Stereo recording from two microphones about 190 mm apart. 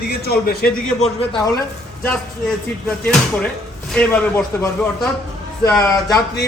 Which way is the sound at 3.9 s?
10° left (ahead or behind).